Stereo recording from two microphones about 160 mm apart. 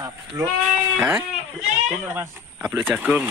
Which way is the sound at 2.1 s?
15° right (ahead or behind).